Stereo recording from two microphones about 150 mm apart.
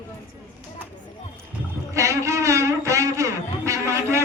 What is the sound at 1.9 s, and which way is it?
A man's voice, 20° right (ahead or behind).